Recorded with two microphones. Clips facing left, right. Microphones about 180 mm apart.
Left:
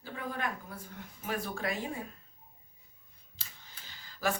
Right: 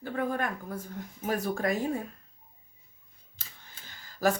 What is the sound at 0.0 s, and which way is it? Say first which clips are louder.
Speech: right 7 dB; 50° right (ahead or behind).